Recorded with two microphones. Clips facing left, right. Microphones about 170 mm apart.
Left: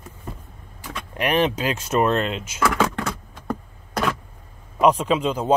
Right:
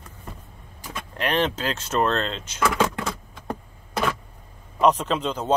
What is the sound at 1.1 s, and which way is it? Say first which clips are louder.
Speech: left 3 dB; 15° left (ahead or behind).